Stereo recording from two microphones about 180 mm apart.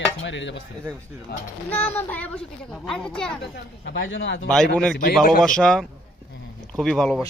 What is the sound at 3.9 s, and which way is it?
Speech, 90° left.